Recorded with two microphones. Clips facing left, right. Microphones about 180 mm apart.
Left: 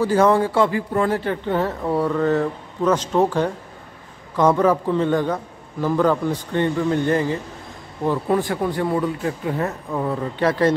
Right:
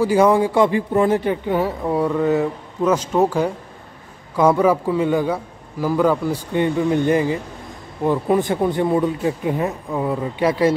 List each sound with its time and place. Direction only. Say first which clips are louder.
0.0 s speech: right 2 dB; 10° right (ahead or behind)